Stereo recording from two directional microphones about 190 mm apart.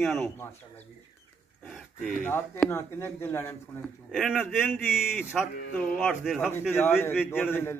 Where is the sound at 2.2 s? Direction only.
10° left (ahead or behind).